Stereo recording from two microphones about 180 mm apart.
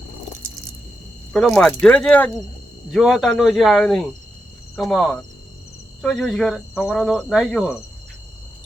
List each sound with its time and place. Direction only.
1.3 s speech: 5° left (ahead or behind)